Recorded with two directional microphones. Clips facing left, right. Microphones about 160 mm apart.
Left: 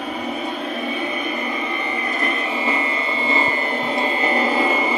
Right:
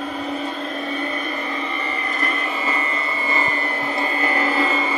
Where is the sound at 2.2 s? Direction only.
15° left (ahead or behind).